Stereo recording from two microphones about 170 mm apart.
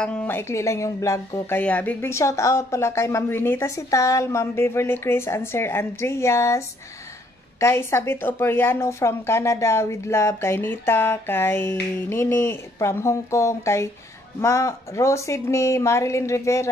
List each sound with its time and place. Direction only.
0.0 s speech: 10° left (ahead or behind)
7.6 s speech: 15° left (ahead or behind)